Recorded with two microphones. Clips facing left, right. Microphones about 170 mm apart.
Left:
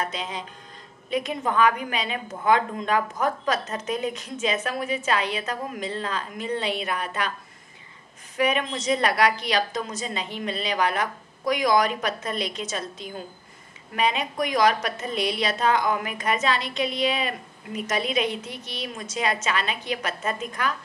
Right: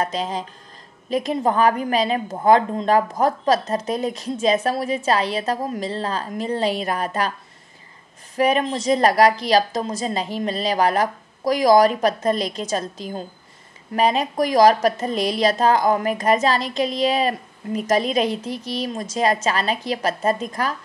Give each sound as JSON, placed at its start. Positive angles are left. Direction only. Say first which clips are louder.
{"t": 0.0, "sound": "a woman's voice", "louder": "right 6 dB", "side_deg": -35}
{"t": 8.4, "sound": "a woman's voice", "louder": "right 5 dB", "side_deg": -35}